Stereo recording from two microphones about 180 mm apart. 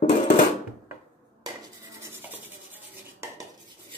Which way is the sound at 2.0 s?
10° right (ahead or behind).